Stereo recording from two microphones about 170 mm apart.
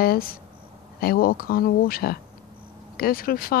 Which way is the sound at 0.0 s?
60° left (ahead or behind).